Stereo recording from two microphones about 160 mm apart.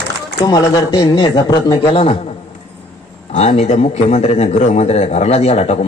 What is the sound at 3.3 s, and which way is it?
A man's voice, 40° left (ahead or behind).